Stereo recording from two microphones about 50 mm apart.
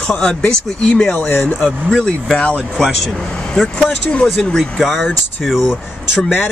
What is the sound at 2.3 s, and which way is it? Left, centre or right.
Speech, left.